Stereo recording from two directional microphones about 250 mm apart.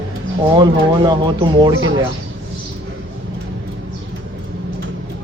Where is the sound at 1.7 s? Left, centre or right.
Right.